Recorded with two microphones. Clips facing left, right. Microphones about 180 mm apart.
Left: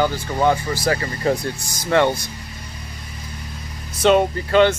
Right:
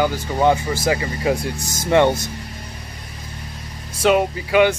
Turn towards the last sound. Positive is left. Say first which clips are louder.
# left 1 dB
turn(degrees=-10)  # may be behind; listen again after turning